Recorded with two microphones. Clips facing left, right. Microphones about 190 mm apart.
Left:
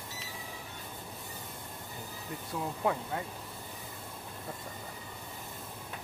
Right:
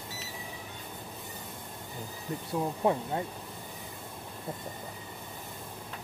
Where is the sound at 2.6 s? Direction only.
25° right (ahead or behind).